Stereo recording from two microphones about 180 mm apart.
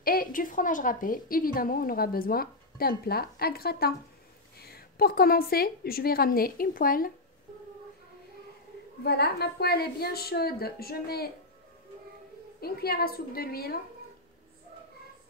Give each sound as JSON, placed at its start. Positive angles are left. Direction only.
{"t": 0.0, "sound": "a woman's voice", "side_deg": 50}
{"t": 9.0, "sound": "a woman's voice", "side_deg": 65}
{"t": 12.5, "sound": "a woman's voice", "side_deg": 60}